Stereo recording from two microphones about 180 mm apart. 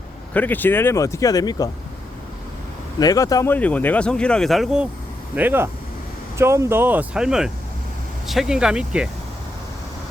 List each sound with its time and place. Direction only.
0.3 s speech: 10° left (ahead or behind)
3.0 s speech: 20° left (ahead or behind); by 9.0 s 5° right (ahead or behind)